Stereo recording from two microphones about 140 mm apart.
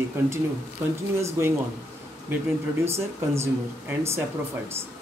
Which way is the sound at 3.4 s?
20° right (ahead or behind).